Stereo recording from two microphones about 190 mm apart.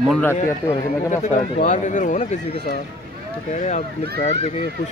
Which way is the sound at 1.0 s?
40° left (ahead or behind).